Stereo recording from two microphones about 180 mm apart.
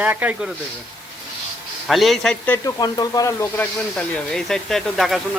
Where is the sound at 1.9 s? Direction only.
Centre (ahead or behind).